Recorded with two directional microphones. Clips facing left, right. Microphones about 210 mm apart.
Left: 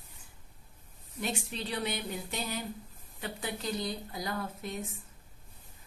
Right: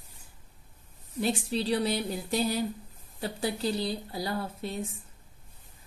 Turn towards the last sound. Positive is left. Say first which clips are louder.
# right 3 dB
turn(degrees=-30)  # may be behind; listen again after turning